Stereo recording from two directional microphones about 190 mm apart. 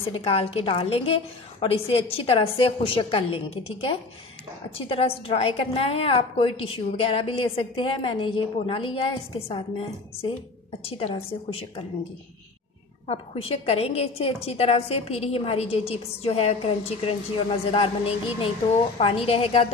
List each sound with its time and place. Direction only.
0.1 s a woman's voice: 30° left (ahead or behind)
10.9 s a woman's voice: 30° left (ahead or behind)
13.0 s a woman's voice: 30° left (ahead or behind)